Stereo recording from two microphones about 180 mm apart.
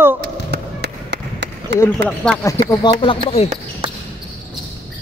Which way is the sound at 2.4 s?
20° left (ahead or behind).